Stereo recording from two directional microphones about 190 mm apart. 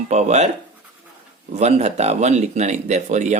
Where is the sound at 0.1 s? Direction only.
35° right (ahead or behind).